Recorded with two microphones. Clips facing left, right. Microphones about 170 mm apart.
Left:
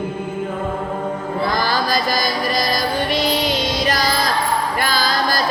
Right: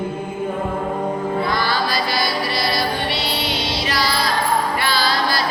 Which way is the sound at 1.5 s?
45° left (ahead or behind).